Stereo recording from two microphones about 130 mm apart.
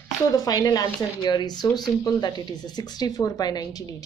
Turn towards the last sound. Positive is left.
turn(degrees=30)  # may be behind; listen again after turning